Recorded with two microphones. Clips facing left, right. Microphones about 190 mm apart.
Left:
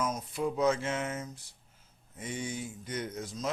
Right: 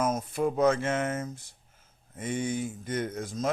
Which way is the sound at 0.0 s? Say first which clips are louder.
Right 5 dB; 50° right (ahead or behind).